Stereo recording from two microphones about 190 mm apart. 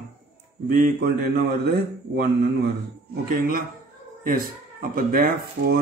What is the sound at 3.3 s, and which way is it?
Speech, 50° right (ahead or behind).